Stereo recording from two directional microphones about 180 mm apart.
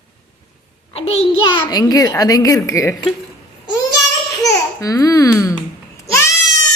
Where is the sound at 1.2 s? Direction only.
25° left (ahead or behind).